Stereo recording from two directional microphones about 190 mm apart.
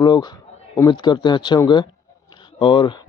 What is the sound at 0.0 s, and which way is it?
A man's voice, 20° left (ahead or behind).